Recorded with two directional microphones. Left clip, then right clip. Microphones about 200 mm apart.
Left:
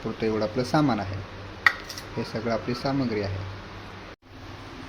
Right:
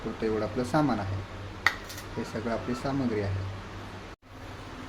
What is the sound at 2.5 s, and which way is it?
Speech, 15° left (ahead or behind).